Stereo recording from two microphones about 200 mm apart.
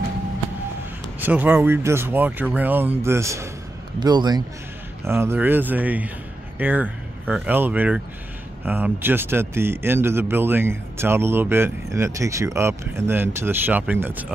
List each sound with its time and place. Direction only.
1.2 s a man's voice: 10° right (ahead or behind)